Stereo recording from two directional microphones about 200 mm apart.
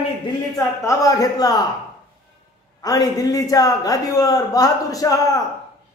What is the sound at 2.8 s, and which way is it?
A man's voice, 20° left (ahead or behind).